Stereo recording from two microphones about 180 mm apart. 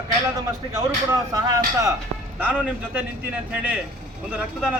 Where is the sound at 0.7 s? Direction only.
15° right (ahead or behind).